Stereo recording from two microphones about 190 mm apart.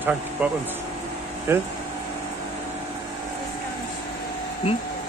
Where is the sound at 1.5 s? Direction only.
10° right (ahead or behind).